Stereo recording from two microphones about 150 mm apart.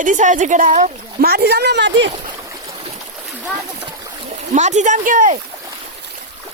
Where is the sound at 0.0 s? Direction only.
55° right (ahead or behind); by 1.7 s 90° right.